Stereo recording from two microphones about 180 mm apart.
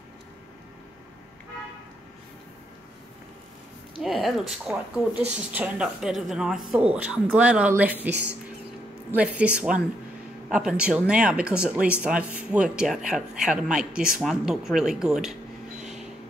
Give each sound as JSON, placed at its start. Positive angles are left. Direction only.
{"t": 4.0, "sound": "speech", "side_deg": 0}
{"t": 9.1, "sound": "speech", "side_deg": -5}
{"t": 15.8, "sound": "a sound", "side_deg": -5}